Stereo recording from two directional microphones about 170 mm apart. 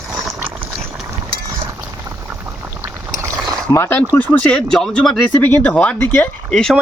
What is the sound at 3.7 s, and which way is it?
Speech, 15° left (ahead or behind).